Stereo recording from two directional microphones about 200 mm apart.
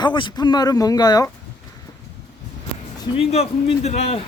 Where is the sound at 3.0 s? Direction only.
30° left (ahead or behind).